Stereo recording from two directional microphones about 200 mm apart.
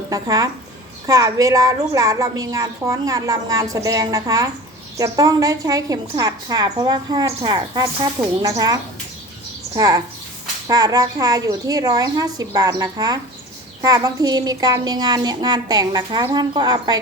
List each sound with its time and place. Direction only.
0.1 s a woman's voice: 20° right (ahead or behind)